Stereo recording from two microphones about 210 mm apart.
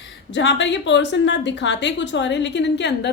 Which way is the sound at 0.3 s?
60° left (ahead or behind).